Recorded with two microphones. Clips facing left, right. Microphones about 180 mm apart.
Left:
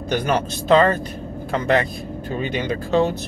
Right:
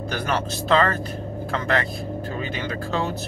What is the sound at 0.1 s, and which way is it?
Speech, 20° left (ahead or behind).